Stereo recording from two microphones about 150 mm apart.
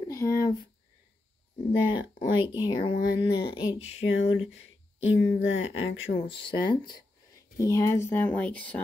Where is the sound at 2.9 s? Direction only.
90° left.